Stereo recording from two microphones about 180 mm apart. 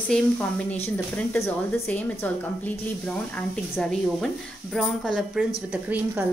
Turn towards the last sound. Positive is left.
turn(degrees=-10)  # may be behind; listen again after turning